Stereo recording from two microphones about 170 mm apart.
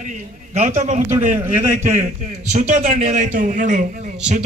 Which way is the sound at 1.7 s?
45° right (ahead or behind).